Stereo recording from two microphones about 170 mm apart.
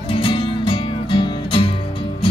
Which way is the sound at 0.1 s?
30° left (ahead or behind).